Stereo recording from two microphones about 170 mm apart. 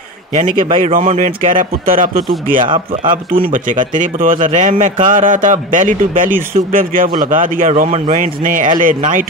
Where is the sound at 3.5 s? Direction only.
50° right (ahead or behind).